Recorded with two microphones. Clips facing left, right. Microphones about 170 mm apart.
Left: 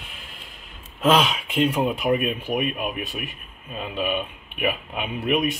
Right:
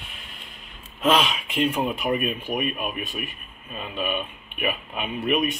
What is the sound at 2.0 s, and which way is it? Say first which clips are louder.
Speech: left 3 dB; 15° left (ahead or behind).